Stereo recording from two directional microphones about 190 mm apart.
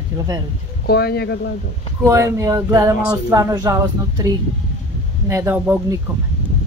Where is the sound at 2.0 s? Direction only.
15° right (ahead or behind).